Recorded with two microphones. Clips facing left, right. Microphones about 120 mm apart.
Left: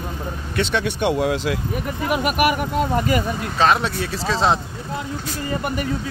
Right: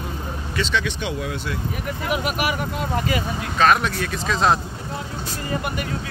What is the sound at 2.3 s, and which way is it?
Speech, 55° left (ahead or behind).